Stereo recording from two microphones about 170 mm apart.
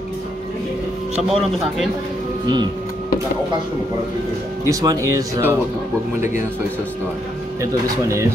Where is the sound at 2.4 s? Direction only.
25° right (ahead or behind).